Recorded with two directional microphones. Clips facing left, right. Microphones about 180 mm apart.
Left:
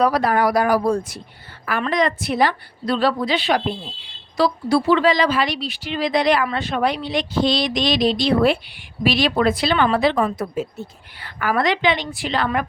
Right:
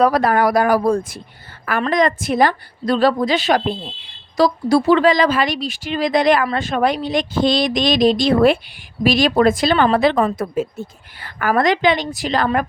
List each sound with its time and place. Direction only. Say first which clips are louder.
0.0 s speech: right 3 dB; 50° right (ahead or behind)